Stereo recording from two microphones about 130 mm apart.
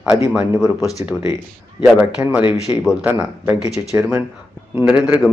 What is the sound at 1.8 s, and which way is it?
Speech, 15° right (ahead or behind).